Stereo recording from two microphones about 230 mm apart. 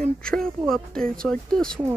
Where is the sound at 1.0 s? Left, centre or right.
Right.